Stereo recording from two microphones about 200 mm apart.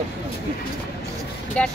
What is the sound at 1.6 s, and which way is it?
Speech, 5° left (ahead or behind).